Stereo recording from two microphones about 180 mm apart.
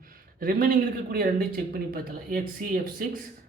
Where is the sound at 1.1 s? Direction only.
55° right (ahead or behind).